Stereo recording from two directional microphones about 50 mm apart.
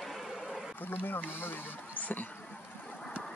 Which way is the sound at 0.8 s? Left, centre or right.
Left.